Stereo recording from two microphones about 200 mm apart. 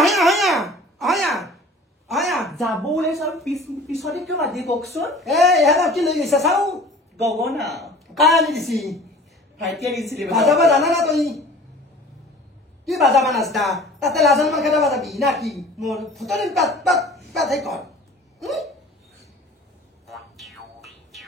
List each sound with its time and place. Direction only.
0.0 s a sound: centre (ahead or behind)
2.0 s a woman's voice: centre (ahead or behind)
12.8 s a woman's voice: centre (ahead or behind)
18.4 s hiccup: centre (ahead or behind)
20.1 s music: centre (ahead or behind)